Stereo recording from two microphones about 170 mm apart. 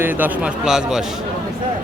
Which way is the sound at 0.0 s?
10° right (ahead or behind).